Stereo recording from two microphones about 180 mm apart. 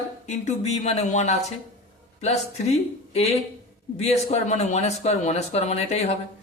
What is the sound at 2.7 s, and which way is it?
Speech, 35° left (ahead or behind).